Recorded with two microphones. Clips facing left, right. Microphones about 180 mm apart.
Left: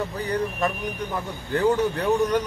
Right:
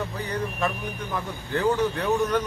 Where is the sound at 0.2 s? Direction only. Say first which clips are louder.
Left 3 dB; 40° left (ahead or behind).